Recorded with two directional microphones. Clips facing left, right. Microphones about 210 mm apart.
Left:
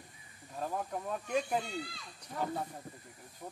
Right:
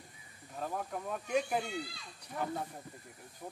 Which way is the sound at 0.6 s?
Centre (ahead or behind).